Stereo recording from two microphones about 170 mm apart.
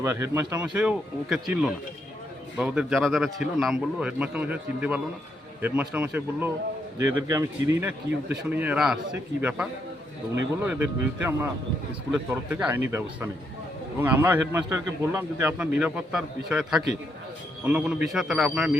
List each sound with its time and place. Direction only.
0.0 s a man's voice: 15° right (ahead or behind)
7.0 s speech: 20° right (ahead or behind)
7.8 s a man's voice: 10° right (ahead or behind)